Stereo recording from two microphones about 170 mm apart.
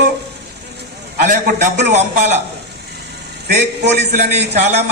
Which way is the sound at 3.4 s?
75° right (ahead or behind).